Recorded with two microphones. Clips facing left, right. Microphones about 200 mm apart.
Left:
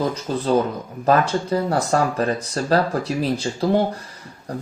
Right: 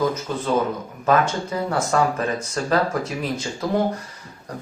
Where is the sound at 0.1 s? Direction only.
35° left (ahead or behind).